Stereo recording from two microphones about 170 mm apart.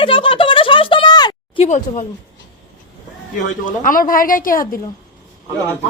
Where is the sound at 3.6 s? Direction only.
55° left (ahead or behind).